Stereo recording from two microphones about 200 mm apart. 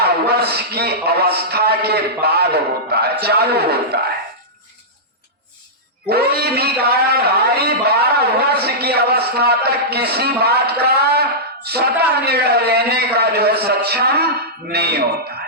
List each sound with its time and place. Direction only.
0.0 s a man's voice: 50° right (ahead or behind)
6.1 s a man's voice: 50° right (ahead or behind)